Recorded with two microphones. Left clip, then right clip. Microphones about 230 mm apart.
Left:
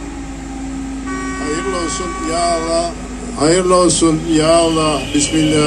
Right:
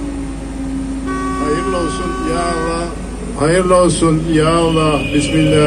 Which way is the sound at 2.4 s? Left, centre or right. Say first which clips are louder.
Left 6 dB; left.